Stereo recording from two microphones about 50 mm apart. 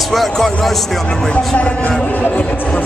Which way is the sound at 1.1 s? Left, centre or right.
Centre.